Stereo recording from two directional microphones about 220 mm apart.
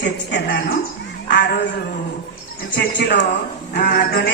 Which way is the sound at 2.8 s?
50° left (ahead or behind).